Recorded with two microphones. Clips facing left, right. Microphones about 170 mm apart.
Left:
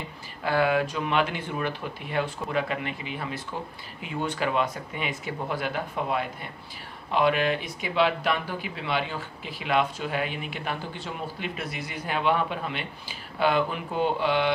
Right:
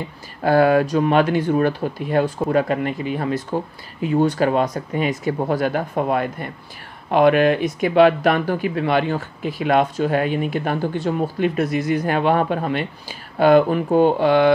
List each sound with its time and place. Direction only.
0.4 s speech: 40° right (ahead or behind)